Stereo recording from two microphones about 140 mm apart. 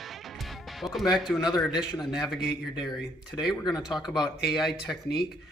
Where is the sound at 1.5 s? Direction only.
Centre (ahead or behind).